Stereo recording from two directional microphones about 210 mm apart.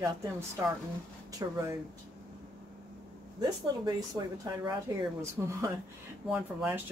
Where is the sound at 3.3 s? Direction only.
20° right (ahead or behind).